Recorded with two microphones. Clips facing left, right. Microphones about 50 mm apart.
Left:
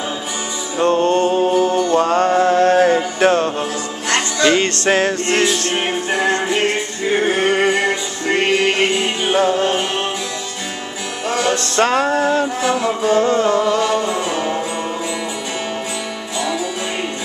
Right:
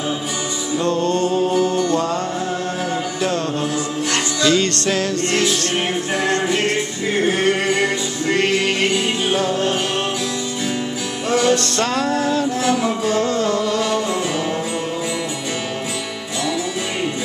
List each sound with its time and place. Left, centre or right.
0.7 s music: left
2.0 s music: left
6.1 s a capella: left
7.1 s music: centre
11.2 s music: centre
11.5 s music: left
12.6 s music: centre
13.1 s music: left